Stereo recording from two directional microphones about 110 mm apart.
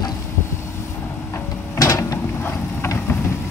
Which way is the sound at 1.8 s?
30° left (ahead or behind).